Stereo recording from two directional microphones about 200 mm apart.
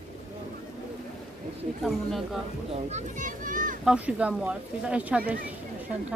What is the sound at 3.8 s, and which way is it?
Speech, 5° right (ahead or behind).